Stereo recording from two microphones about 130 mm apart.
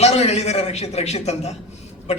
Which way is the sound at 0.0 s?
55° left (ahead or behind).